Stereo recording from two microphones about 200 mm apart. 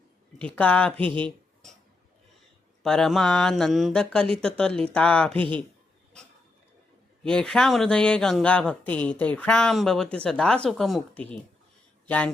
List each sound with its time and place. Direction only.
0.3 s speech: 5° left (ahead or behind)
1.0 s speech: 25° right (ahead or behind)
2.8 s speech: 5° left (ahead or behind)
7.3 s speech: 5° left (ahead or behind)